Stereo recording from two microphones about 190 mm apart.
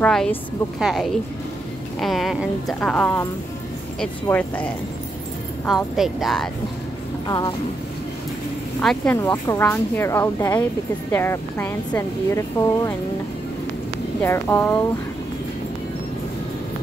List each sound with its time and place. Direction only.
0.0 s a woman's voice: 5° left (ahead or behind)
5.9 s a woman's voice: centre (ahead or behind)
7.2 s speech: 20° left (ahead or behind)
8.8 s speech: 10° left (ahead or behind)
14.2 s speech: 10° left (ahead or behind)